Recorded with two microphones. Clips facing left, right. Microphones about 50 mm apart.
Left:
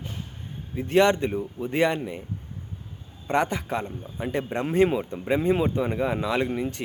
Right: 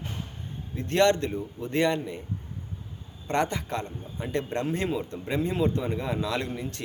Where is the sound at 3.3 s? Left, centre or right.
Centre.